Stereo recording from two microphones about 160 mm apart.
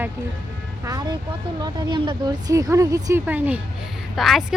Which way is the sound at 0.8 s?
25° right (ahead or behind).